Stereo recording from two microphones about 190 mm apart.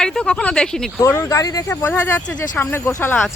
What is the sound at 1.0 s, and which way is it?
Speech, 15° left (ahead or behind).